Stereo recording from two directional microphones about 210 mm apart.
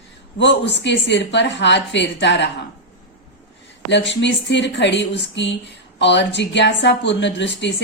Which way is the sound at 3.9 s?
55° left (ahead or behind).